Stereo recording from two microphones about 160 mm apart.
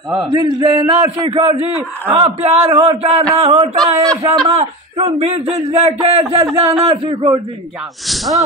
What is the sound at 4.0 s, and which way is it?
Speech, 20° right (ahead or behind).